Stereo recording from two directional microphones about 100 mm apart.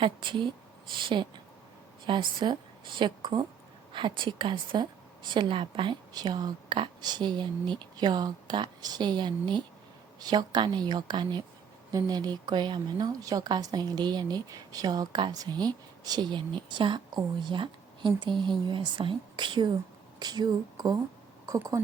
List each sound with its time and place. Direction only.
0.0 s a woman's voice: 55° right (ahead or behind)
6.1 s a woman's voice: 45° right (ahead or behind)
11.9 s a woman's voice: 40° right (ahead or behind)